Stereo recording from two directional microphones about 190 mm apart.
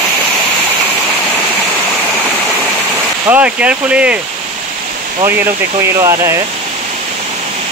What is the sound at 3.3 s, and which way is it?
Speech, 5° right (ahead or behind).